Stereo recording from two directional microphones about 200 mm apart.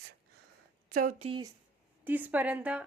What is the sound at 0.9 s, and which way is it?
Speech, 40° right (ahead or behind).